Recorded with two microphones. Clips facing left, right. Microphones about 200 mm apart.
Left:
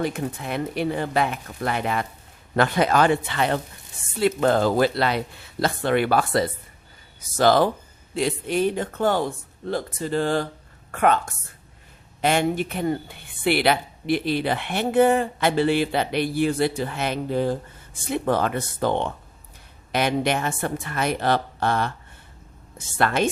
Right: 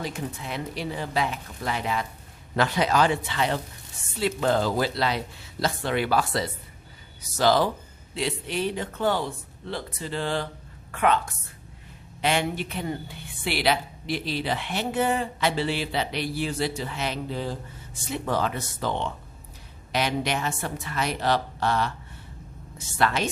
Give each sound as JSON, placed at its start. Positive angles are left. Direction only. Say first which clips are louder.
{"t": 0.0, "sound": "speech", "louder": "left 6 dB", "side_deg": 55}
{"t": 23.0, "sound": "speech", "louder": "left 4 dB", "side_deg": 50}